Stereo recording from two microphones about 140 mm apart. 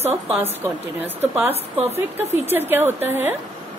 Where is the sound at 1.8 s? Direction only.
50° right (ahead or behind).